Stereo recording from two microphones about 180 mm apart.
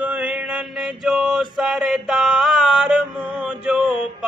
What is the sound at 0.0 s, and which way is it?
Mantra, 5° right (ahead or behind).